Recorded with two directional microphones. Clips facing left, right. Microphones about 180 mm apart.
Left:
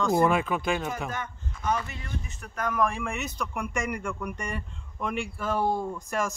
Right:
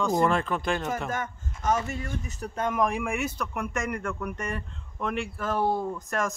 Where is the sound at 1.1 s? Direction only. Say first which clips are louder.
Right 3 dB; 45° right (ahead or behind).